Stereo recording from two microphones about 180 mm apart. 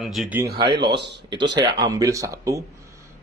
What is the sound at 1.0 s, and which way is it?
Speech, 70° right (ahead or behind).